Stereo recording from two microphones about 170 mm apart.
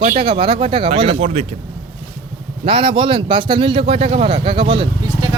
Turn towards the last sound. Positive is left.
turn(degrees=-30)  # may be behind; listen again after turning